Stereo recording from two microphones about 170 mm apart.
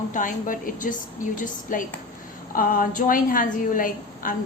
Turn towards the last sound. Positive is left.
turn(degrees=50)  # may be behind; listen again after turning